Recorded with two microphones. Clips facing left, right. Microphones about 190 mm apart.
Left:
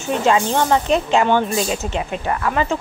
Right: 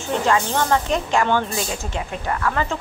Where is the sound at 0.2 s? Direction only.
20° left (ahead or behind).